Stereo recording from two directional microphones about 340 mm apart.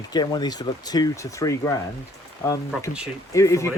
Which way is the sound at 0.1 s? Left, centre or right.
Centre.